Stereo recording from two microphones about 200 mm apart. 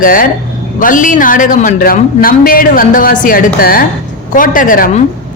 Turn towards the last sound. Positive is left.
turn(degrees=40)  # may be behind; listen again after turning